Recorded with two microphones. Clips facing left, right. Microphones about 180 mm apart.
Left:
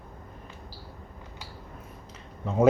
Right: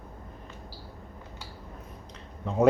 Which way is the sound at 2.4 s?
Centre (ahead or behind).